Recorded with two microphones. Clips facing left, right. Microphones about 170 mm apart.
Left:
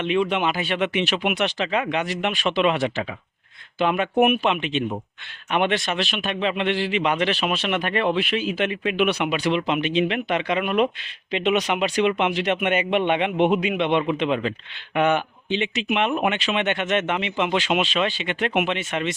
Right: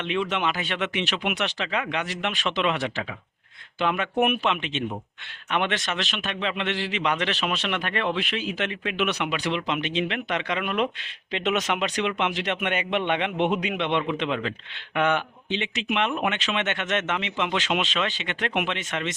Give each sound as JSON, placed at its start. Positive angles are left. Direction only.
{"t": 0.0, "sound": "a man's voice", "side_deg": 15}
{"t": 11.3, "sound": "a man's voice", "side_deg": 5}